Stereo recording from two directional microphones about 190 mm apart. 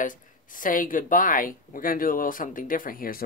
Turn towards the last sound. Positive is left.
turn(degrees=50)  # may be behind; listen again after turning